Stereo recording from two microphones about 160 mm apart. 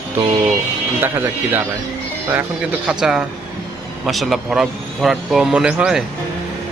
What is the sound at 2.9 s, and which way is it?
Speech, 5° right (ahead or behind).